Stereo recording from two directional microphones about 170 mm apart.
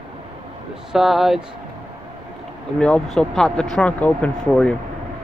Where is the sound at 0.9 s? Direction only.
Centre (ahead or behind).